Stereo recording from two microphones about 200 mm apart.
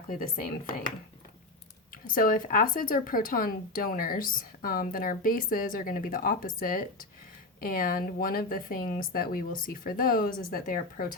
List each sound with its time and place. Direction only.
0.1 s a woman's voice: 45° left (ahead or behind)
2.0 s a woman's voice: 45° left (ahead or behind)